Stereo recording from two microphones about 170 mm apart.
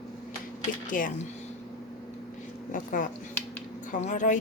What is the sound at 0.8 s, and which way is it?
Speech, 50° left (ahead or behind).